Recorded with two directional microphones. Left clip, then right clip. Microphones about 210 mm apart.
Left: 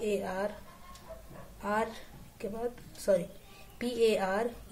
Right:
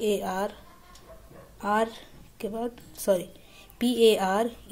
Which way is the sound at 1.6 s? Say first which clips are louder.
Right 6 dB; 30° right (ahead or behind).